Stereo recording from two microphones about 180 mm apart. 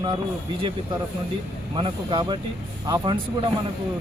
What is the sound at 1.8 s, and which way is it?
Speech, 25° right (ahead or behind).